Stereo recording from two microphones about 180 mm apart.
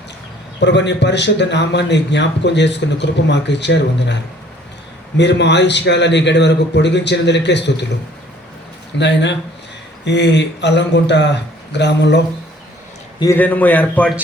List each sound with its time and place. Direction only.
0.6 s speech: 75° left (ahead or behind)
9.0 s speech: 75° left (ahead or behind)
13.1 s a man's voice: 15° left (ahead or behind)